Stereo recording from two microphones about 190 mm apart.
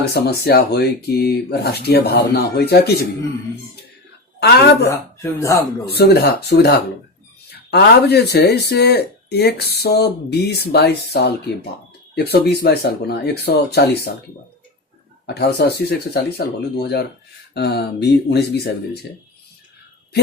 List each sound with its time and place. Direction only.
0.1 s speech: 60° left (ahead or behind)
4.4 s a woman's voice: 60° left (ahead or behind)
4.9 s speech: 15° left (ahead or behind)
6.0 s speech: 60° left (ahead or behind)
15.4 s speech: 60° left (ahead or behind)